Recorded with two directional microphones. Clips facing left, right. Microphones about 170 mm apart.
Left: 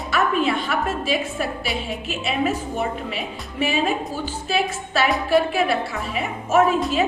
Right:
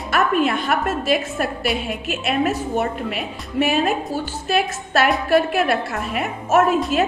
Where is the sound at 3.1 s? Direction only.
55° right (ahead or behind).